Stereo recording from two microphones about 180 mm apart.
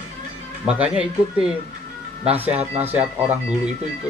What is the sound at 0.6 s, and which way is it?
Speech, 5° right (ahead or behind).